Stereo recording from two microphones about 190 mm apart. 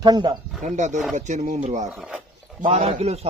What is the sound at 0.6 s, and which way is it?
A man's voice, 40° right (ahead or behind).